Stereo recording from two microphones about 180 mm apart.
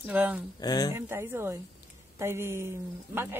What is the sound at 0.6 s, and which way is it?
Speech, 20° left (ahead or behind).